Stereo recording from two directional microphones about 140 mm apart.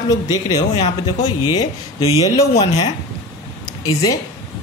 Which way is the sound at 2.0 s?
45° left (ahead or behind).